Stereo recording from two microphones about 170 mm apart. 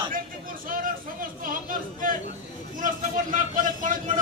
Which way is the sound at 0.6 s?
55° right (ahead or behind).